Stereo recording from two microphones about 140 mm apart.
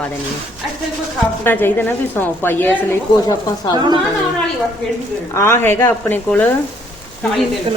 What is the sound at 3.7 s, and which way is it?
Speech, 30° right (ahead or behind).